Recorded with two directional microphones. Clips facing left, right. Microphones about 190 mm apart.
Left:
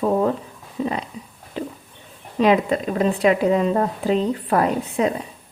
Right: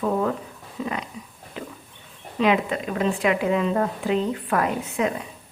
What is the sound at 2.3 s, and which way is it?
A woman's voice, 40° left (ahead or behind).